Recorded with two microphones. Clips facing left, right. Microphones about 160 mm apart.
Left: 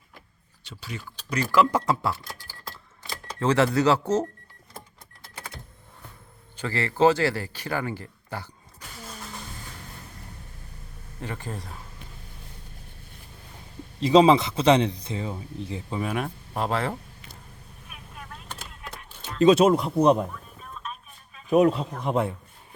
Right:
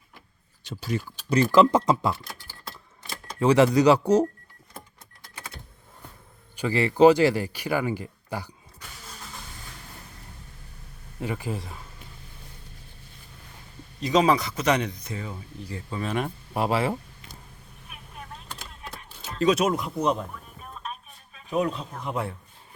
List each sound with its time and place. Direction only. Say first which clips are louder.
0.6 s speech: right 9 dB; 45° right (ahead or behind)
1.3 s speech: right 4 dB; 25° right (ahead or behind)
3.4 s a man's voice: right 3 dB; 15° right (ahead or behind)
6.6 s a man's voice: right 4 dB; 15° right (ahead or behind)
11.2 s a man's voice: right 4 dB; 10° right (ahead or behind)
14.0 s speech: left 4 dB; 25° left (ahead or behind)
16.6 s a man's voice: right 2 dB; 10° right (ahead or behind)
19.4 s speech: left 5 dB; 30° left (ahead or behind)
21.6 s speech: left 5 dB; 40° left (ahead or behind)